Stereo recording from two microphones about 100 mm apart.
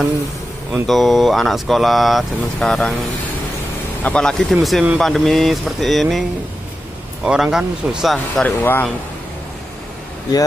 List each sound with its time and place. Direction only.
0.8 s speech: centre (ahead or behind)
4.0 s speech: 10° left (ahead or behind)
7.2 s speech: 10° right (ahead or behind)
8.5 s speech: 20° left (ahead or behind)